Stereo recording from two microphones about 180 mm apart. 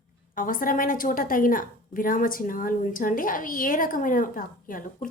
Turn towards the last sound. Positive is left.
turn(degrees=50)  # may be behind; listen again after turning